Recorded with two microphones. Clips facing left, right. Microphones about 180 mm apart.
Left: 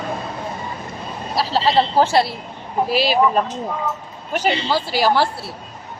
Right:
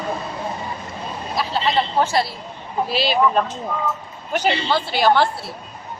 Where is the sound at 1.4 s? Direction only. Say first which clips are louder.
Left 4 dB; 35° left (ahead or behind).